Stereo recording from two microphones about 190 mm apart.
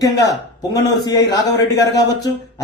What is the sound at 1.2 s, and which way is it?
Speech, 65° left (ahead or behind).